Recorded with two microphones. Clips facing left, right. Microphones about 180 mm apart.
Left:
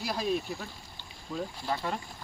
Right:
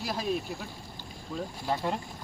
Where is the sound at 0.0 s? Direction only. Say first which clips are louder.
Even; centre (ahead or behind).